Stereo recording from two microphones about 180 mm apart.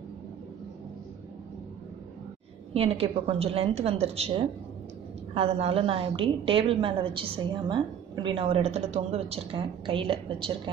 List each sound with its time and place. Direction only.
2.7 s a woman's voice: 35° right (ahead or behind)